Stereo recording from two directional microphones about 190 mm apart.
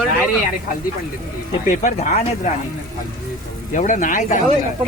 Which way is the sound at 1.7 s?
40° left (ahead or behind).